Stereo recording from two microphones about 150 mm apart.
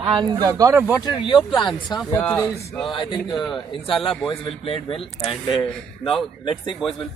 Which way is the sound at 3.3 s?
Centre (ahead or behind).